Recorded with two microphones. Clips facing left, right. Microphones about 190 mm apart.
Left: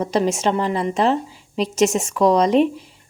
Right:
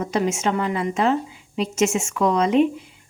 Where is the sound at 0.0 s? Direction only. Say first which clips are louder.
Left 3 dB; 35° left (ahead or behind).